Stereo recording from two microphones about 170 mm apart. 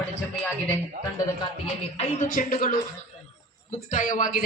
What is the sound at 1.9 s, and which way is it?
Speech, 40° left (ahead or behind).